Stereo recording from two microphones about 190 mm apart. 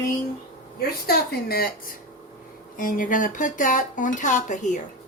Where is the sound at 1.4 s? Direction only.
50° left (ahead or behind).